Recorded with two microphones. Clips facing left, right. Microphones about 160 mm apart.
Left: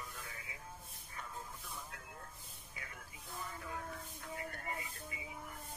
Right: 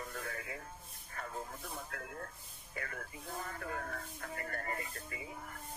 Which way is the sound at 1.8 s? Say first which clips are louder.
Right 7 dB; 60° right (ahead or behind).